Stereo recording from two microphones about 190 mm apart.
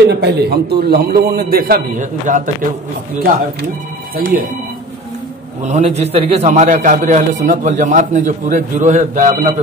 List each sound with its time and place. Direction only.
0.0 s a man's voice: 60° right (ahead or behind); by 2.5 s 45° right (ahead or behind)
4.2 s a man's voice: 50° right (ahead or behind)
5.6 s a man's voice: 35° right (ahead or behind)